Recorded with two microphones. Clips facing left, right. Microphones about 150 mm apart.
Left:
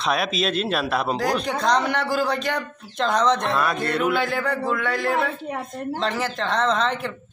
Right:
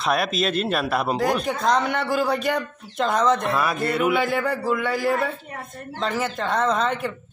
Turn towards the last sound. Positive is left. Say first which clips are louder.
# even
turn(degrees=-5)  # may be behind; listen again after turning